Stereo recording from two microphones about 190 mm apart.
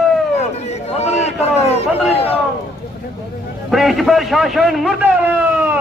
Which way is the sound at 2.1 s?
30° left (ahead or behind).